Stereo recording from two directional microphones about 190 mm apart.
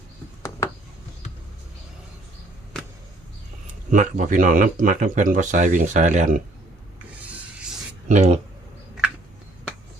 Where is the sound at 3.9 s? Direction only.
45° right (ahead or behind).